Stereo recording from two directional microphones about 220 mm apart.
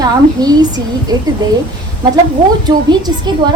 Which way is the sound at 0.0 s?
15° right (ahead or behind).